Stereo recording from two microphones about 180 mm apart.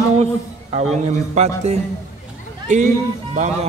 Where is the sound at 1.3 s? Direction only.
35° right (ahead or behind).